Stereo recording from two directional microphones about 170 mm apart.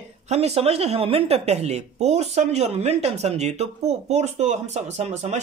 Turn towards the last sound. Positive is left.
turn(degrees=-40)  # may be behind; listen again after turning